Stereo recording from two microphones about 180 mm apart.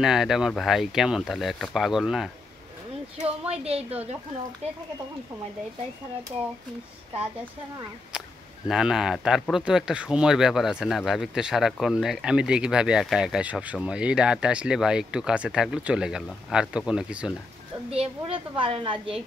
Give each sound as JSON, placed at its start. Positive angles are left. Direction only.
{"t": 0.0, "sound": "speech", "side_deg": -5}
{"t": 3.5, "sound": "a woman's voice", "side_deg": -35}
{"t": 8.6, "sound": "speech", "side_deg": -5}
{"t": 17.8, "sound": "a woman's voice", "side_deg": -35}